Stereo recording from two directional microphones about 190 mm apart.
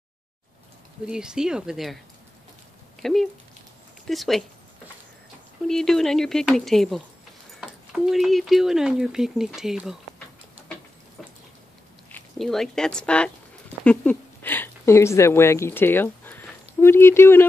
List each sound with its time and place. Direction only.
1.0 s speech: 5° right (ahead or behind)
3.0 s speech: centre (ahead or behind)
5.7 s speech: centre (ahead or behind)
12.1 s speech: centre (ahead or behind)